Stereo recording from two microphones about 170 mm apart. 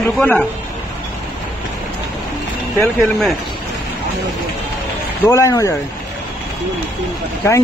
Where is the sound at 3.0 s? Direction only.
Centre (ahead or behind).